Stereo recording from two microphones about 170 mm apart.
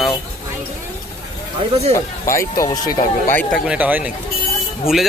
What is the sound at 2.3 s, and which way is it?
Speech, 20° left (ahead or behind).